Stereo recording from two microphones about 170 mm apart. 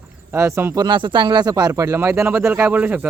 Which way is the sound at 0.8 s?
30° right (ahead or behind).